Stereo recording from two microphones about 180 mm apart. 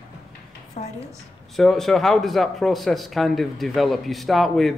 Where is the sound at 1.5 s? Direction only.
Centre (ahead or behind).